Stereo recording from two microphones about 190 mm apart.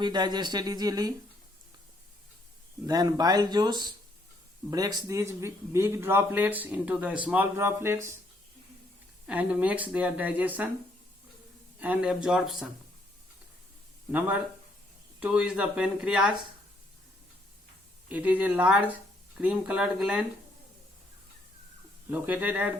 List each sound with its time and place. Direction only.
0.0 s speech: 20° right (ahead or behind)
2.8 s speech: 20° right (ahead or behind)
9.2 s speech: 5° right (ahead or behind)
11.8 s speech: 5° right (ahead or behind)
14.1 s speech: 10° right (ahead or behind)
18.1 s speech: 10° right (ahead or behind)
22.1 s speech: 10° right (ahead or behind)